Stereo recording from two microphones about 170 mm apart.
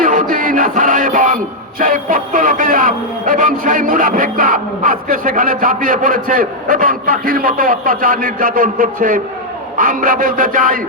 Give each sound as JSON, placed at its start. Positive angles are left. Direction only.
{"t": 0.0, "sound": "music", "side_deg": -55}
{"t": 9.7, "sound": "a man's voice", "side_deg": -55}